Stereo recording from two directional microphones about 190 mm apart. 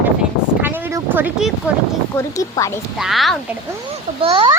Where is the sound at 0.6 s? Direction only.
10° right (ahead or behind).